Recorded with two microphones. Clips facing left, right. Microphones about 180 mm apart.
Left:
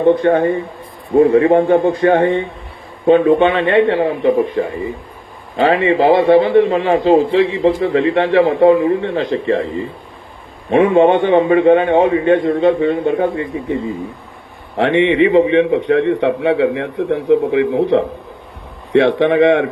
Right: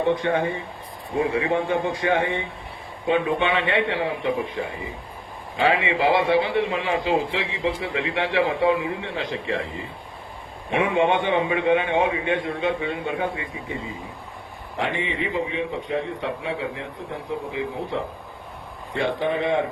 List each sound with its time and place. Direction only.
0.1 s a man's voice: 55° left (ahead or behind)
10.7 s a man's voice: 60° left (ahead or behind)
14.8 s a man's voice: 70° left (ahead or behind)